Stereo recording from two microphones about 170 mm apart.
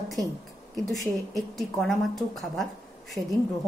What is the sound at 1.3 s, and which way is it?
Speech, centre (ahead or behind).